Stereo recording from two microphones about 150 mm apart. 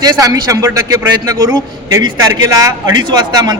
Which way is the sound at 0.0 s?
25° right (ahead or behind).